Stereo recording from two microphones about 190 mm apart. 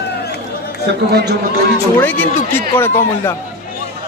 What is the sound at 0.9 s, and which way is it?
Speech, 65° right (ahead or behind).